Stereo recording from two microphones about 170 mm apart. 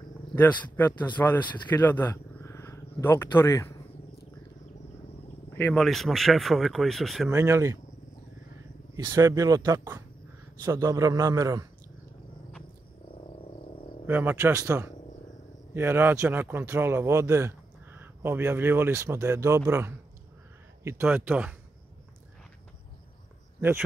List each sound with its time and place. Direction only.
0.3 s a man's voice: 10° left (ahead or behind)
5.5 s a sound: 10° left (ahead or behind)
5.8 s speech: centre (ahead or behind)
7.2 s speech: 15° right (ahead or behind)
8.9 s speech: 20° right (ahead or behind)
14.0 s speech: 10° right (ahead or behind)